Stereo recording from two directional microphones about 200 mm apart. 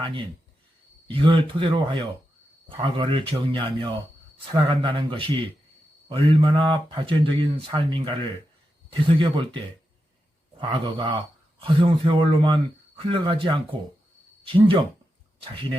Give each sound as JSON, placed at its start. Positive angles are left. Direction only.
{"t": 1.0, "sound": "speech", "side_deg": -25}
{"t": 10.6, "sound": "speech", "side_deg": -25}